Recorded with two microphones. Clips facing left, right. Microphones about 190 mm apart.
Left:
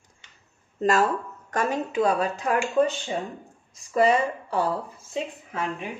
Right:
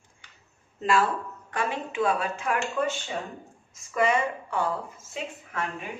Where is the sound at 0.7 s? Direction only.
40° left (ahead or behind).